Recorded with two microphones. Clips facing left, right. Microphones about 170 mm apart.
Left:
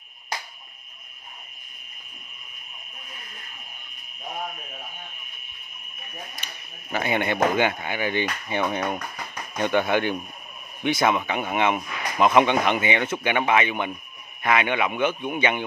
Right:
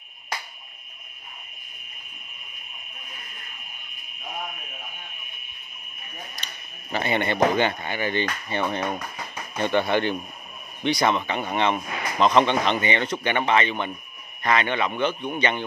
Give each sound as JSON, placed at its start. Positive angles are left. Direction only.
{"t": 6.9, "sound": "speech", "side_deg": 10}